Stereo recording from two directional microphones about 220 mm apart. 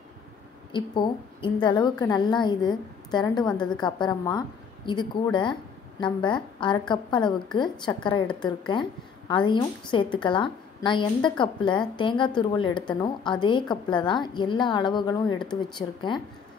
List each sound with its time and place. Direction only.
0.7 s a woman's voice: 20° left (ahead or behind)